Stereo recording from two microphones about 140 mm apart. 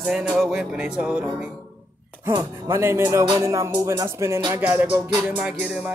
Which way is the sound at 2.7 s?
20° right (ahead or behind).